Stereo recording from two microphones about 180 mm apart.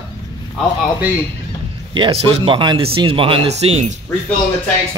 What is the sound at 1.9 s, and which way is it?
Speech, 30° right (ahead or behind).